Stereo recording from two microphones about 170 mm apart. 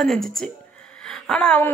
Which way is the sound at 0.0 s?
Centre (ahead or behind).